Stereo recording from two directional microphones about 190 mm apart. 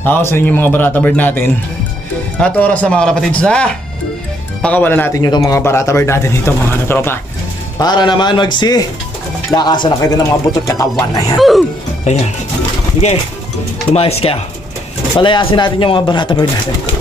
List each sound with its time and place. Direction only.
0.0 s speech: 10° left (ahead or behind)
11.3 s speech: centre (ahead or behind)
12.1 s speech: 35° left (ahead or behind)
13.9 s speech: 30° left (ahead or behind)